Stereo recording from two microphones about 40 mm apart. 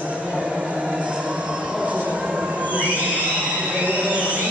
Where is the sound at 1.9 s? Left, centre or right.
Right.